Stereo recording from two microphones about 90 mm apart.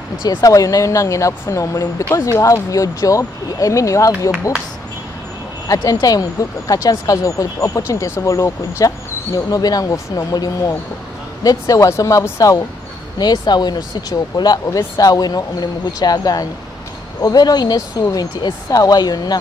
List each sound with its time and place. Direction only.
0.2 s speech: 50° left (ahead or behind)
0.5 s speech: 40° left (ahead or behind)
5.7 s speech: 45° left (ahead or behind)
13.2 s speech: 50° left (ahead or behind)